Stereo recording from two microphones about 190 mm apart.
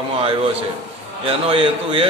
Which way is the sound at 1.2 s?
30° right (ahead or behind).